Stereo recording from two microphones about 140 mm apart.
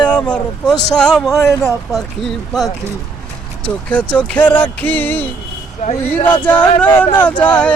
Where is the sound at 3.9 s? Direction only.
10° left (ahead or behind).